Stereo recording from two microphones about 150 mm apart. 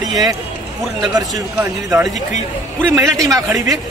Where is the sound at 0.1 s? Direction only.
25° right (ahead or behind).